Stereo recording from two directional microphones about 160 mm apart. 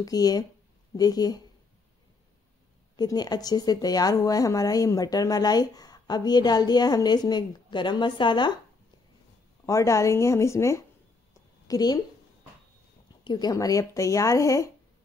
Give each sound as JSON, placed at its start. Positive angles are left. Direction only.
{"t": 0.0, "sound": "a woman's voice", "side_deg": 25}
{"t": 3.0, "sound": "a woman's voice", "side_deg": 25}
{"t": 9.7, "sound": "a woman's voice", "side_deg": 20}
{"t": 11.3, "sound": "a sound", "side_deg": 20}
{"t": 13.2, "sound": "a woman's voice", "side_deg": 25}